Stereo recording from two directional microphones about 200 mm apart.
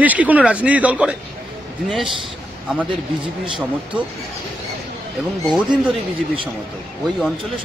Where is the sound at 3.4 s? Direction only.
25° right (ahead or behind).